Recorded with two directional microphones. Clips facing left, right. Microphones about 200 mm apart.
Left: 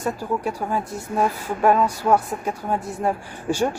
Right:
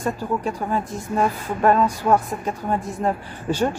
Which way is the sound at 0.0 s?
10° left (ahead or behind).